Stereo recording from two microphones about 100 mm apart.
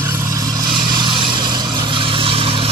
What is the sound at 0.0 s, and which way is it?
Vehicle, 25° right (ahead or behind).